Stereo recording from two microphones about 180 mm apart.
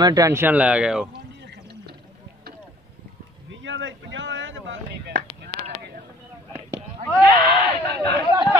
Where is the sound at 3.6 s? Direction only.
90° right.